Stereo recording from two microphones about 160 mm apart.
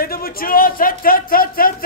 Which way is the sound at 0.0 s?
70° left (ahead or behind).